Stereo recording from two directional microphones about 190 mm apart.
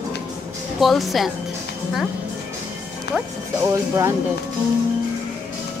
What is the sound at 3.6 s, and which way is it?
Speech, 15° right (ahead or behind).